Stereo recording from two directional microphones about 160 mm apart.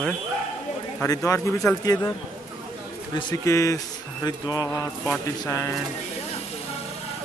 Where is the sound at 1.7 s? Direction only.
15° left (ahead or behind).